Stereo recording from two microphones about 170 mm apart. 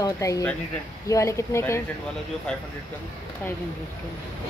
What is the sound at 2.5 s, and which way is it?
Speech, 5° left (ahead or behind).